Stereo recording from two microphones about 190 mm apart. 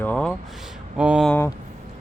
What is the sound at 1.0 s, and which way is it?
Speech, 5° right (ahead or behind).